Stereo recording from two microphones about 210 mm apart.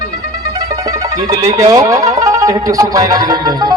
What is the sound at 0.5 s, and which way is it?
Speech, 15° right (ahead or behind).